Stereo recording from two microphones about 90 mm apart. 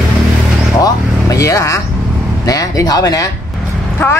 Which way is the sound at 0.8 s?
40° left (ahead or behind).